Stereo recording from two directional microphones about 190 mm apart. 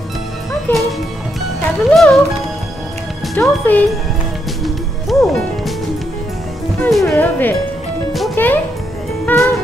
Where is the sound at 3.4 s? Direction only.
10° left (ahead or behind).